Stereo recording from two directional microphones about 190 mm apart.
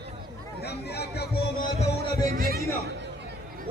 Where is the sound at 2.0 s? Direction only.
50° right (ahead or behind).